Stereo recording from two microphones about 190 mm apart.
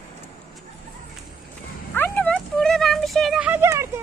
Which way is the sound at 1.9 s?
10° left (ahead or behind).